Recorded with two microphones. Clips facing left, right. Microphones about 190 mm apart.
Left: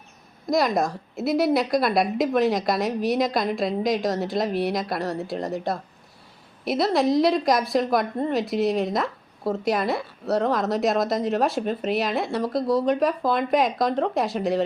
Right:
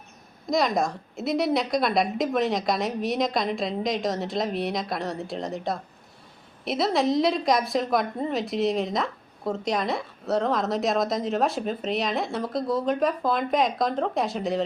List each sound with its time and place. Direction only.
0.5 s a woman's voice: centre (ahead or behind)